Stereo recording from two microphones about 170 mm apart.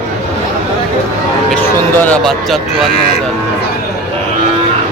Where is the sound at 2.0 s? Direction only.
5° left (ahead or behind).